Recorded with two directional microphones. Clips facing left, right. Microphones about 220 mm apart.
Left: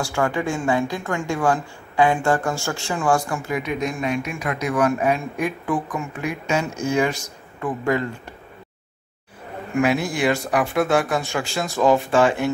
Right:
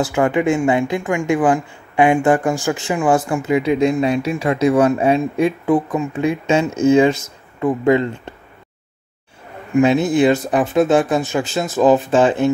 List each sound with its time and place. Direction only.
0.0 s speech: 20° right (ahead or behind)
9.8 s speech: 25° right (ahead or behind)